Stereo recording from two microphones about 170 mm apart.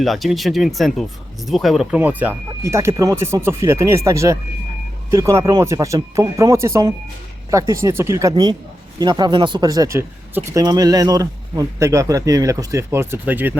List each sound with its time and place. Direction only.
0.0 s speech: centre (ahead or behind)